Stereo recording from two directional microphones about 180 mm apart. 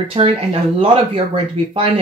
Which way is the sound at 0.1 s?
35° right (ahead or behind).